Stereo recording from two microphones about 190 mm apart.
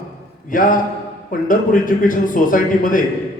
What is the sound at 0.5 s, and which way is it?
A man's voice, 45° left (ahead or behind).